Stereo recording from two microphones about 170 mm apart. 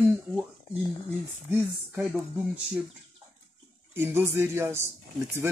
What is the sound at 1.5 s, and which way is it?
Speech, 10° right (ahead or behind).